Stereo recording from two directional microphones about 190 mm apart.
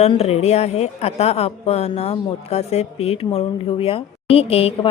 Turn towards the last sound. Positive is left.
turn(degrees=30)  # may be behind; listen again after turning